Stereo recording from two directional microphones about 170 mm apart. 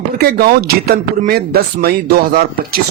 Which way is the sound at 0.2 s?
65° right (ahead or behind).